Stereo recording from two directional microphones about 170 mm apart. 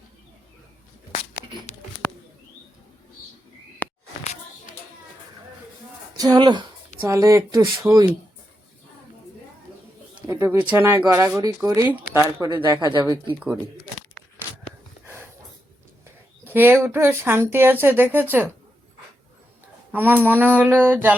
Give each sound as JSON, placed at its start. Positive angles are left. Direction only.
{"t": 3.8, "sound": "a sound", "side_deg": 10}
{"t": 6.1, "sound": "speech", "side_deg": -25}
{"t": 10.2, "sound": "speech", "side_deg": -15}
{"t": 16.4, "sound": "speech", "side_deg": -10}
{"t": 19.9, "sound": "speech", "side_deg": -10}